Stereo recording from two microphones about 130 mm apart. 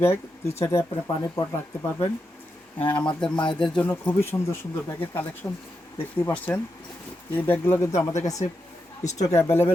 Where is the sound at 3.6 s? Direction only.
10° left (ahead or behind).